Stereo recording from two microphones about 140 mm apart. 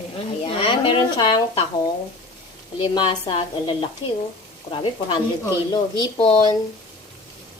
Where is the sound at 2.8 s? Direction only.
35° left (ahead or behind).